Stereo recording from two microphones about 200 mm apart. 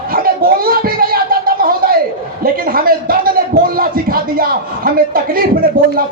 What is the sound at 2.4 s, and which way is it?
Speech, 45° right (ahead or behind).